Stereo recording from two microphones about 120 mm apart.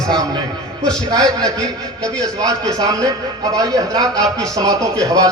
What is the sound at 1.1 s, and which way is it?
A man's voice, 30° right (ahead or behind).